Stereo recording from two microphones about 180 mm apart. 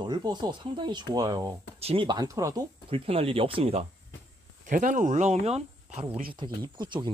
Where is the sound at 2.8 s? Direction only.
30° right (ahead or behind).